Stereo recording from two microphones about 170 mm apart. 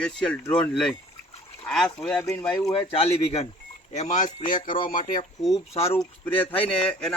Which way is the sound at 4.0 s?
45° left (ahead or behind).